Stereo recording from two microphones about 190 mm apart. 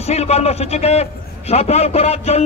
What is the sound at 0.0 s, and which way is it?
A man's voice, 35° left (ahead or behind).